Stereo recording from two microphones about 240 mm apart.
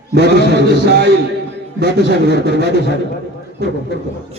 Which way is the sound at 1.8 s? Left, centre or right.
Right.